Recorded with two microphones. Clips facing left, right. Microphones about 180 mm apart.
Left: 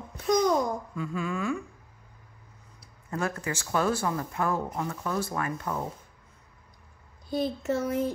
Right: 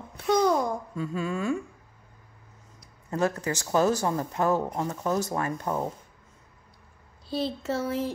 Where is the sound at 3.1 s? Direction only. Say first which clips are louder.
Right 4 dB; 35° right (ahead or behind).